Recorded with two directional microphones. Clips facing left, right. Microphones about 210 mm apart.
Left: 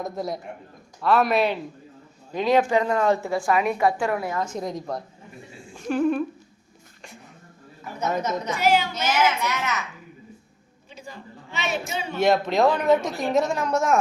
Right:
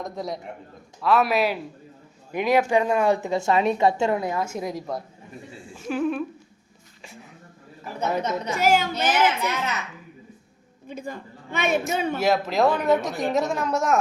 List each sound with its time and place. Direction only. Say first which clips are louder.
0.0 s a woman's voice: left 2 dB; centre (ahead or behind); by 4.4 s 20° right (ahead or behind)
4.4 s a woman's voice: even; 5° right (ahead or behind)
7.0 s a sound: right 1 dB; centre (ahead or behind)
8.5 s speech: right 1 dB; 45° right (ahead or behind)
9.0 s a child's voice: right 1 dB; 30° right (ahead or behind)
10.8 s a woman's voice: right 7 dB; 55° right (ahead or behind)
12.2 s a woman's voice: left 3 dB; 5° right (ahead or behind)